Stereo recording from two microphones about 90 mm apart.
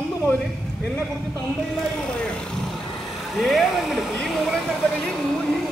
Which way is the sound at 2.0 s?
10° left (ahead or behind).